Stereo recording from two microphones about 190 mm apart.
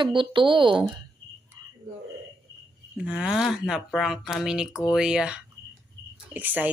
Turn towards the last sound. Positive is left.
turn(degrees=-10)  # may be behind; listen again after turning